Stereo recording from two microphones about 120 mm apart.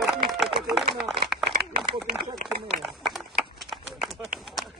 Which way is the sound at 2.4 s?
90° right.